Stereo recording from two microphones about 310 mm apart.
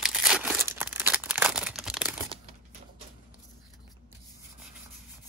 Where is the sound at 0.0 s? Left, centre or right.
Centre.